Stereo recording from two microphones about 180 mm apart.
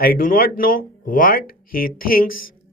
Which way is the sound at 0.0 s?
55° left (ahead or behind).